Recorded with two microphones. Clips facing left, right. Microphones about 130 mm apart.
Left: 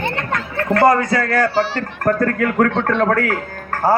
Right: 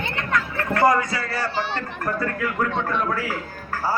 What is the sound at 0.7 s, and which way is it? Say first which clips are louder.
A man's voice: left 5 dB; 55° left (ahead or behind).